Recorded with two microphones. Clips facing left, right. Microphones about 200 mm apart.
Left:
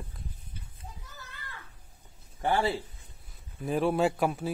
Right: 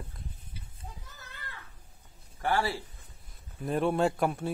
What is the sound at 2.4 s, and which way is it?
Speech, 20° left (ahead or behind).